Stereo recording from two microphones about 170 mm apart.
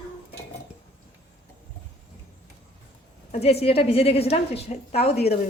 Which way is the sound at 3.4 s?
35° left (ahead or behind).